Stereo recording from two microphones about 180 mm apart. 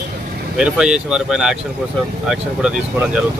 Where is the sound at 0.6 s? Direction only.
5° right (ahead or behind).